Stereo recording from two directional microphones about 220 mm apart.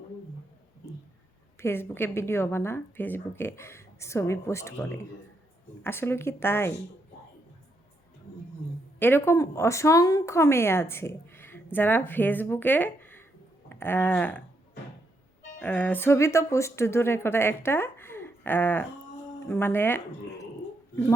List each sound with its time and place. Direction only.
1.5 s speech: 10° left (ahead or behind)
9.0 s speech: 10° left (ahead or behind)
15.5 s speech: 5° left (ahead or behind)